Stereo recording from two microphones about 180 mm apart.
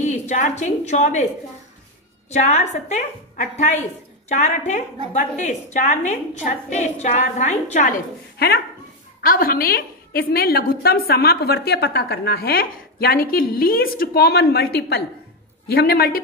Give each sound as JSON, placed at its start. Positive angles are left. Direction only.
{"t": 0.0, "sound": "a woman's voice", "side_deg": 40}
{"t": 2.2, "sound": "a woman's voice", "side_deg": 40}
{"t": 8.4, "sound": "a woman's voice", "side_deg": 60}